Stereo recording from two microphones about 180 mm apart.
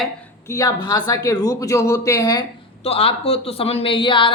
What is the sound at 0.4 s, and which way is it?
Speech, 20° left (ahead or behind).